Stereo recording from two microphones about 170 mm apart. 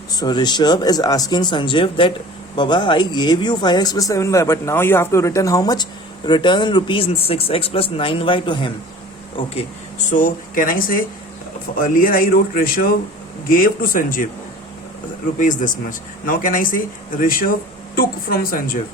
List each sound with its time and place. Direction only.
0.1 s speech: 25° left (ahead or behind)
9.3 s a man's voice: 40° left (ahead or behind)
15.4 s speech: 50° left (ahead or behind)